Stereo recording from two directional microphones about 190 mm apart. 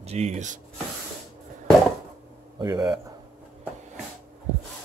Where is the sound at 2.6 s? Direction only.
20° right (ahead or behind).